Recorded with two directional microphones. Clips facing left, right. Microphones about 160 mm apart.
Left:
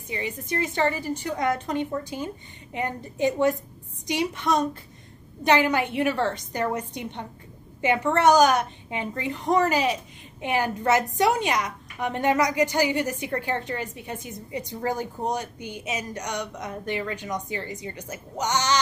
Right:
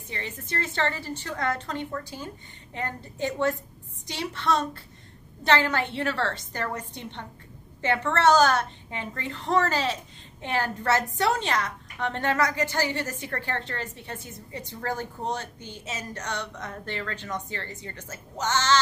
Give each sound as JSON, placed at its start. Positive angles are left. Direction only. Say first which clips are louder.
{"t": 0.1, "sound": "a woman's voice", "louder": "left 5 dB", "side_deg": 15}